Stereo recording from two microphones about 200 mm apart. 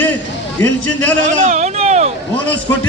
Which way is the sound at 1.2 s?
35° right (ahead or behind).